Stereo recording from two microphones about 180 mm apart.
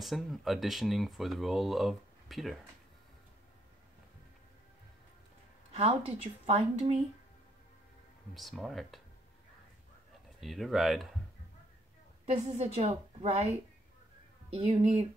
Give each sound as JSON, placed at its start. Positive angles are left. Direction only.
{"t": 0.0, "sound": "speech", "side_deg": 0}
{"t": 5.7, "sound": "a woman's voice", "side_deg": -35}
{"t": 8.4, "sound": "speech", "side_deg": 0}
{"t": 10.4, "sound": "speech", "side_deg": 0}
{"t": 12.3, "sound": "a woman's voice", "side_deg": -35}